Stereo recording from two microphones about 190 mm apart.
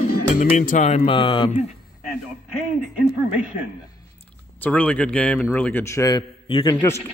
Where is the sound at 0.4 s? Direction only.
45° left (ahead or behind); by 1.6 s 25° left (ahead or behind).